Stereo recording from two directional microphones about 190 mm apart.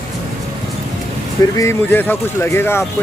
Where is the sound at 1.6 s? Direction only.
15° left (ahead or behind).